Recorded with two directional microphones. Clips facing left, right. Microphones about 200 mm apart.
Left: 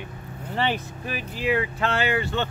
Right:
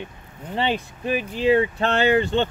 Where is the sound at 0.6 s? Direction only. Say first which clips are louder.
Right 2 dB; 20° right (ahead or behind).